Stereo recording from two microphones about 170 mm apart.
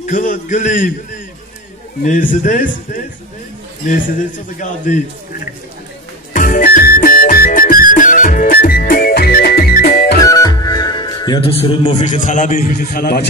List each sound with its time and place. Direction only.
0.0 s a man's voice: 50° left (ahead or behind)
2.0 s a man's voice: 50° left (ahead or behind)
4.6 s a man's voice: 50° left (ahead or behind)
6.3 s music: 50° left (ahead or behind)
10.2 s a man's voice: 20° left (ahead or behind); by 13.2 s 65° left (ahead or behind)